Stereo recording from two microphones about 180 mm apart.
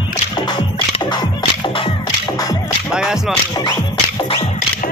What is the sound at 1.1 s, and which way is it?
Music, 30° left (ahead or behind).